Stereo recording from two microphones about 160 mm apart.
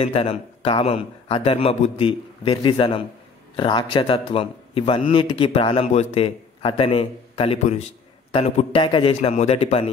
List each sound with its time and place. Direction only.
0.0 s a man's voice: 40° left (ahead or behind)